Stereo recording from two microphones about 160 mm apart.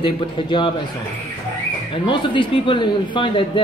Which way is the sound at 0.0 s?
30° left (ahead or behind).